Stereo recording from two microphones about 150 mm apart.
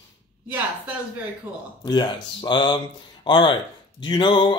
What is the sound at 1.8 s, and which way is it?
Speech, 30° left (ahead or behind).